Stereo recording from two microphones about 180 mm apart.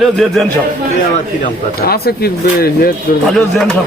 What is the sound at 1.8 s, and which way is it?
Speech, 60° left (ahead or behind).